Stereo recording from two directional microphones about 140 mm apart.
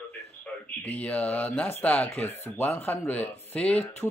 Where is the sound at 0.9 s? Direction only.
10° left (ahead or behind).